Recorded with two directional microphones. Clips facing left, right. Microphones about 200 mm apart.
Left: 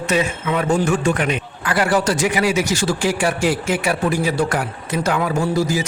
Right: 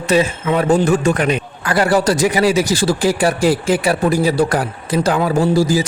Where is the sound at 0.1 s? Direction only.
35° right (ahead or behind).